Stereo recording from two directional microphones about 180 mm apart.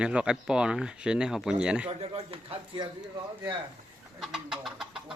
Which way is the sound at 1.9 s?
35° right (ahead or behind).